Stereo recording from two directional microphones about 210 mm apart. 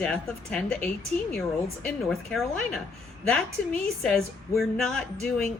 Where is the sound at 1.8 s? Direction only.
Centre (ahead or behind).